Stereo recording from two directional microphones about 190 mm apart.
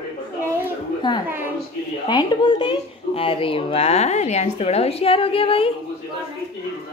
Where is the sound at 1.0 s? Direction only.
25° left (ahead or behind).